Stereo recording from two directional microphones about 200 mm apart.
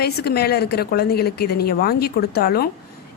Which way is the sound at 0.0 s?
50° left (ahead or behind).